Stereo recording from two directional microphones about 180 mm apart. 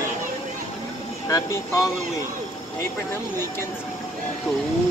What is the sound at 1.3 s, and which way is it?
Speech, 15° left (ahead or behind).